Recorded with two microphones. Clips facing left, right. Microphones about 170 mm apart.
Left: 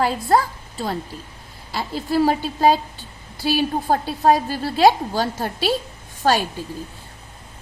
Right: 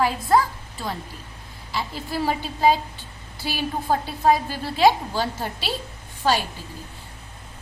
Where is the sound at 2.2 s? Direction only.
40° left (ahead or behind).